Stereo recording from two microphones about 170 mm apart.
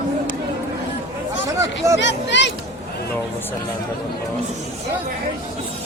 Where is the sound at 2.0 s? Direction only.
90° left.